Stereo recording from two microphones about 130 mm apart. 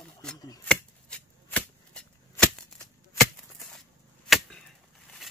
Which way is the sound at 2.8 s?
25° left (ahead or behind).